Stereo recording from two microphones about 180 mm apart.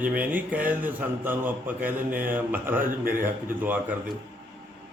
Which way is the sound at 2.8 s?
50° right (ahead or behind).